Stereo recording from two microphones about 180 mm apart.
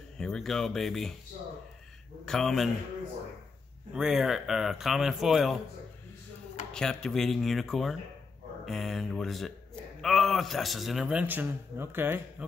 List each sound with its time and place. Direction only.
0.2 s a man's voice: centre (ahead or behind)
2.2 s a man's voice: centre (ahead or behind)
3.9 s a man's voice: centre (ahead or behind)
6.7 s a man's voice: 5° left (ahead or behind)